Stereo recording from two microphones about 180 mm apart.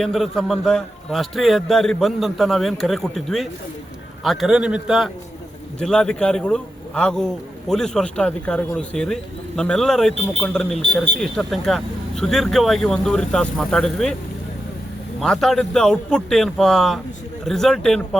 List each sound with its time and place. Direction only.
0.0 s a man's voice: centre (ahead or behind)
15.2 s a man's voice: centre (ahead or behind)